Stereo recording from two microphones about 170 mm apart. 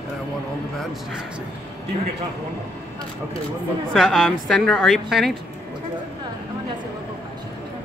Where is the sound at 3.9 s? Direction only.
Centre (ahead or behind).